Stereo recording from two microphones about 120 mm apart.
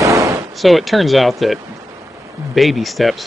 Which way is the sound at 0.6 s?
Centre (ahead or behind).